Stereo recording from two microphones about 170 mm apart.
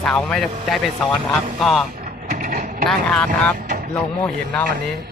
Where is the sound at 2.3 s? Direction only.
50° right (ahead or behind).